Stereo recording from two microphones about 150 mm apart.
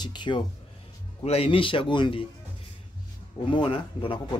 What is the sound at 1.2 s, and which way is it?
A man's voice, 40° left (ahead or behind).